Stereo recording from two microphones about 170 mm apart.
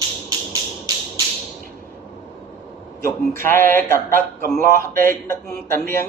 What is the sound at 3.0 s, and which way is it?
A man's voice, 15° left (ahead or behind).